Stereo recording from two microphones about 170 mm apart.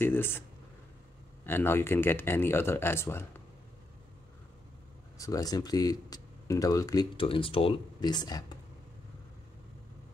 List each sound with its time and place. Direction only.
0.0 s speech: 15° left (ahead or behind)
1.4 s speech: 10° left (ahead or behind)
5.1 s speech: 20° left (ahead or behind)